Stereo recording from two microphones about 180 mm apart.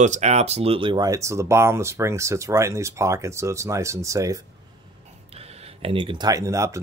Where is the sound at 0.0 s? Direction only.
40° right (ahead or behind); by 4.4 s 15° right (ahead or behind).